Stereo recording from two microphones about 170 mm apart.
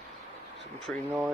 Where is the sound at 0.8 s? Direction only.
Centre (ahead or behind).